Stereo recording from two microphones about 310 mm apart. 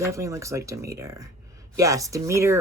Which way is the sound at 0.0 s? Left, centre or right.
Centre.